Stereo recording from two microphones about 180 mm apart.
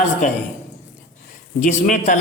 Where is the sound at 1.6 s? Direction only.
45° left (ahead or behind).